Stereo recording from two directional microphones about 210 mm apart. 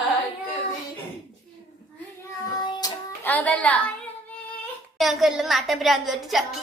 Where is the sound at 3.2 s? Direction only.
5° left (ahead or behind).